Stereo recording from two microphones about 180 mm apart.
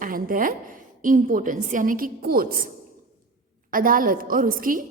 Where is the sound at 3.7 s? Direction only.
50° right (ahead or behind).